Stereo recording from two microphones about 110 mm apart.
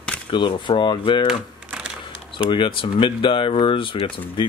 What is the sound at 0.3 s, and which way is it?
Speech, 45° left (ahead or behind).